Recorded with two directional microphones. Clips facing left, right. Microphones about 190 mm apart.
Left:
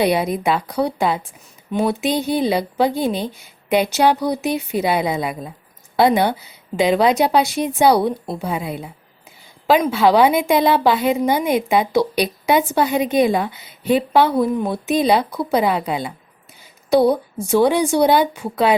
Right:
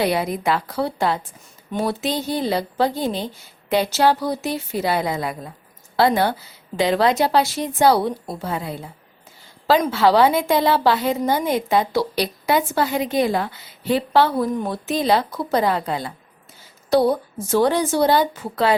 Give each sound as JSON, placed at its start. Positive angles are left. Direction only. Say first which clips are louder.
{"t": 0.0, "sound": "a woman's voice", "louder": "left 3 dB", "side_deg": 20}